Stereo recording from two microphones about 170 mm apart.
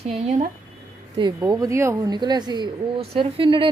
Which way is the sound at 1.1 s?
25° right (ahead or behind).